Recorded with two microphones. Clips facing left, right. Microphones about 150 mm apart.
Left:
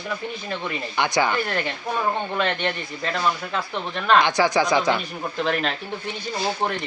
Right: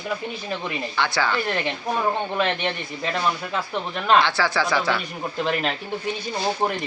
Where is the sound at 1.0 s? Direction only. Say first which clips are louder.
Left 2 dB; 15° left (ahead or behind).